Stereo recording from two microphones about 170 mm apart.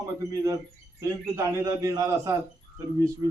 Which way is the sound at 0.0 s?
20° right (ahead or behind).